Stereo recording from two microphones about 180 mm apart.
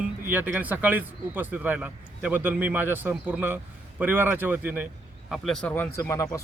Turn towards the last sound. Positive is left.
turn(degrees=15)  # may be behind; listen again after turning